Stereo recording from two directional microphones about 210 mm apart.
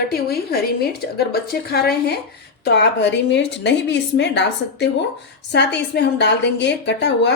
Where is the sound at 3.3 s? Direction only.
55° left (ahead or behind).